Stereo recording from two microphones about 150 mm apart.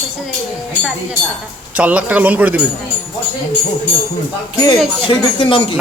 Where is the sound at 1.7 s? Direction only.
10° right (ahead or behind).